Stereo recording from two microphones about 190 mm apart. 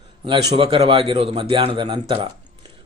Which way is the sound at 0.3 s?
25° right (ahead or behind).